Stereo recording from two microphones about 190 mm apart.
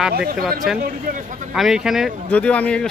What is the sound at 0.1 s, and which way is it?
Speech, 55° right (ahead or behind).